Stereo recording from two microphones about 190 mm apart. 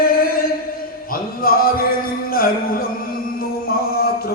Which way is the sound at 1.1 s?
50° left (ahead or behind).